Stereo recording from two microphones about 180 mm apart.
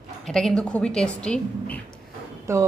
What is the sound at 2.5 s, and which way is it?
Speech, 15° right (ahead or behind).